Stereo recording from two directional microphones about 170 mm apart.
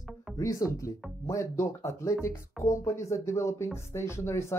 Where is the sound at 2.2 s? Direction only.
15° left (ahead or behind).